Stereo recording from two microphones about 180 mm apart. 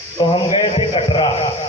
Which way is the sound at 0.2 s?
30° left (ahead or behind).